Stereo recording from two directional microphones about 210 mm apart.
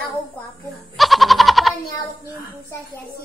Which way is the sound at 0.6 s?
Centre (ahead or behind).